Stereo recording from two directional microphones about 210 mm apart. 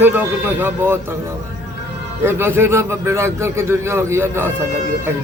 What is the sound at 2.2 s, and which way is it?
A man's voice, 10° right (ahead or behind).